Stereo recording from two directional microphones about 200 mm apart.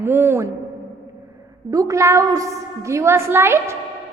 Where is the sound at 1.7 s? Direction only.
15° right (ahead or behind).